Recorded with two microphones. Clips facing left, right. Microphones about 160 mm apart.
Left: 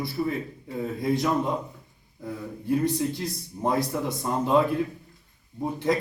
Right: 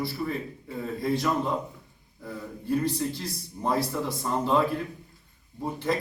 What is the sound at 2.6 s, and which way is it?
Speech, 20° left (ahead or behind).